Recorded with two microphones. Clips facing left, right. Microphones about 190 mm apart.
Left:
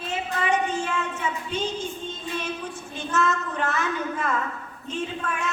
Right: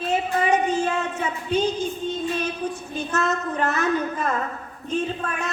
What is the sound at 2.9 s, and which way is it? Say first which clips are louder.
A woman's voice: left 1 dB; 40° right (ahead or behind).